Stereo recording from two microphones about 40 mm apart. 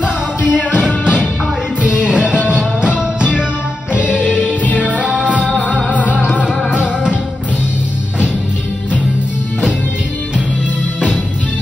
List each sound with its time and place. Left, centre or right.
0.0 s music: right
4.4 s music: left
4.7 s music: right